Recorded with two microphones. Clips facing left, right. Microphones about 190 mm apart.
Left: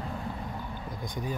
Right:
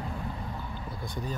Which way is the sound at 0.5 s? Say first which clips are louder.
Left 1 dB; 15° left (ahead or behind).